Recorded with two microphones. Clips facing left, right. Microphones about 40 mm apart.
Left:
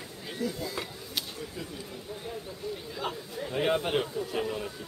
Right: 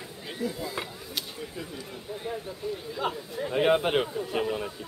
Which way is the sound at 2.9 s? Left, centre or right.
Centre.